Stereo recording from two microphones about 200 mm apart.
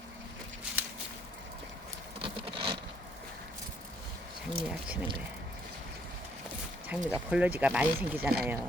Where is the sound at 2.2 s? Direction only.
25° right (ahead or behind).